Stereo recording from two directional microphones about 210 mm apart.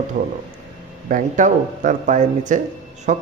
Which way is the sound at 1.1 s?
35° right (ahead or behind).